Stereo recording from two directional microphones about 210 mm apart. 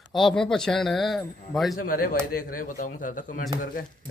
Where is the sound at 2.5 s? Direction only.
40° left (ahead or behind).